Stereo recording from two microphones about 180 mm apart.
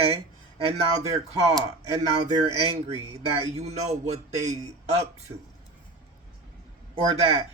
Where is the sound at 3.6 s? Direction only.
40° right (ahead or behind).